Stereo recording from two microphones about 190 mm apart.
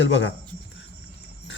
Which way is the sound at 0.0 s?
75° left (ahead or behind).